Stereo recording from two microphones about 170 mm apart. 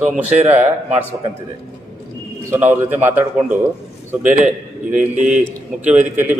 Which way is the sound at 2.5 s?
10° right (ahead or behind).